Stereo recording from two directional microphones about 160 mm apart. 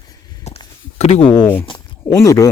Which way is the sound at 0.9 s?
40° left (ahead or behind).